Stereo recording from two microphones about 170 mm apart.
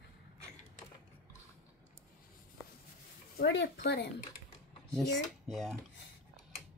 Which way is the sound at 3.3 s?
85° left.